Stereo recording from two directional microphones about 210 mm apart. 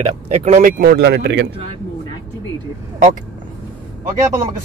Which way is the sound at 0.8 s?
50° right (ahead or behind).